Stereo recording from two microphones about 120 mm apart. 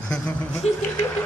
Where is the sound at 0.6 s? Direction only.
60° left (ahead or behind).